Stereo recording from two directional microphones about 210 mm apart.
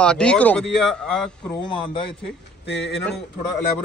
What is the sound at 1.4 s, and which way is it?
Speech, 25° left (ahead or behind).